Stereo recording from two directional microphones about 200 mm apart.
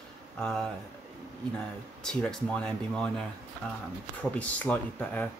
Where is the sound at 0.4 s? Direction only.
5° left (ahead or behind).